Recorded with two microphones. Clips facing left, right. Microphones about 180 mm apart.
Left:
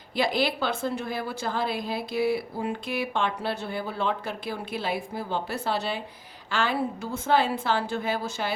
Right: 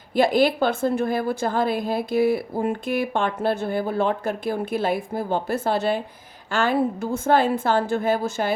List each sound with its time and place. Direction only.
0.1 s a woman's voice: 50° right (ahead or behind)